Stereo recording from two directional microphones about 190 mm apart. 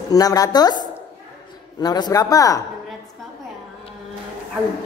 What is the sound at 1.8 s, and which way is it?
Speech, 20° left (ahead or behind).